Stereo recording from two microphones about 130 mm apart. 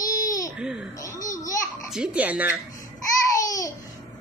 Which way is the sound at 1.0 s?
25° left (ahead or behind).